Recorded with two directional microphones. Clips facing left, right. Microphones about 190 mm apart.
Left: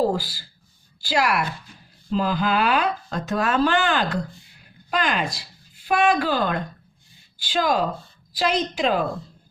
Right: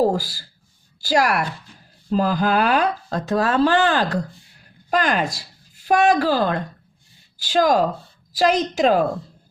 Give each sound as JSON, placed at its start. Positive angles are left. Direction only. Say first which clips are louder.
{"t": 0.0, "sound": "speech", "louder": "right 3 dB", "side_deg": -45}